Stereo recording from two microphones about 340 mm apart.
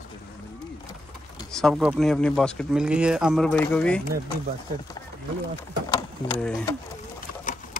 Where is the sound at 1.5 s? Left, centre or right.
Centre.